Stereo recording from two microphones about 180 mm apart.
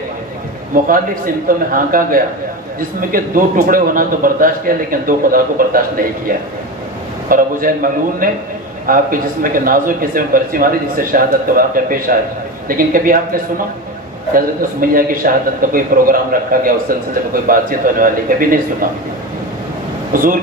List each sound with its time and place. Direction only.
0.8 s a man's voice: 50° right (ahead or behind)
20.1 s speech: 50° right (ahead or behind)